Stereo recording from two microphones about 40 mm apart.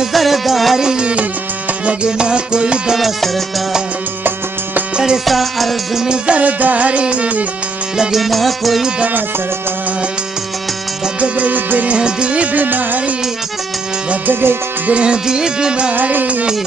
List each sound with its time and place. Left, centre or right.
0.1 s music: centre
0.7 s music: centre
4.9 s music: centre
5.2 s music: centre
6.0 s music: right
8.2 s music: centre
11.1 s music: right
11.9 s music: right
12.5 s music: right
14.2 s music: right
14.9 s music: right
15.2 s music: centre
15.9 s music: right